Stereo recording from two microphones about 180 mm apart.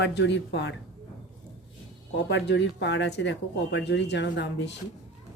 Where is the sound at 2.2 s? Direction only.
70° left (ahead or behind).